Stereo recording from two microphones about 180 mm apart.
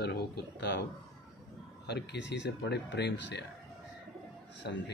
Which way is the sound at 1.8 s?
70° left (ahead or behind).